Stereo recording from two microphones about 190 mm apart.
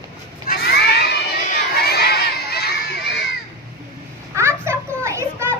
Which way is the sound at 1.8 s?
60° left (ahead or behind).